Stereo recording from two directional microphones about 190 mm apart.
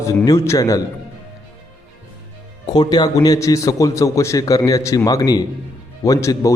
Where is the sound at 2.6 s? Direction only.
20° left (ahead or behind).